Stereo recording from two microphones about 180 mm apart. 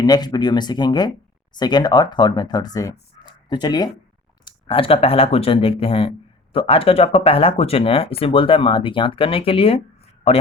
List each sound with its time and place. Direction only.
0.0 s speech: 20° left (ahead or behind)
3.2 s a sound: 25° left (ahead or behind)
4.4 s speech: 30° left (ahead or behind)